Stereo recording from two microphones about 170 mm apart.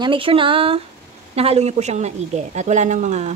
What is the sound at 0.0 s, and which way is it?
Speech, 30° right (ahead or behind).